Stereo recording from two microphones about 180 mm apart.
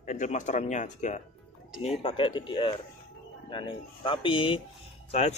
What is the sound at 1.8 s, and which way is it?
Speech, 30° left (ahead or behind).